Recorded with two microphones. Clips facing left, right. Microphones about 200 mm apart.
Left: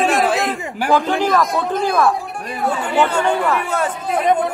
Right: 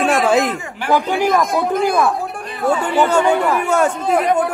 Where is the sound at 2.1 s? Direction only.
Centre (ahead or behind).